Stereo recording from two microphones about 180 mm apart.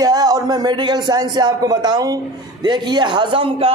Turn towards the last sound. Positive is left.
turn(degrees=-30)  # may be behind; listen again after turning